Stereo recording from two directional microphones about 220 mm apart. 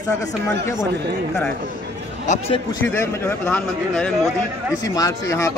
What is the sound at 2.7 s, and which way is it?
A man's voice, 10° left (ahead or behind).